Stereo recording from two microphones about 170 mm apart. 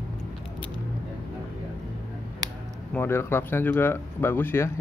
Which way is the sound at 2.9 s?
15° left (ahead or behind).